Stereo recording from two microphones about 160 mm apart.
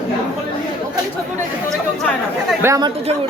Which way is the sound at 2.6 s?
20° right (ahead or behind).